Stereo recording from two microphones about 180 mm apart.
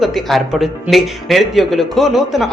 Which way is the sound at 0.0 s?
Centre (ahead or behind).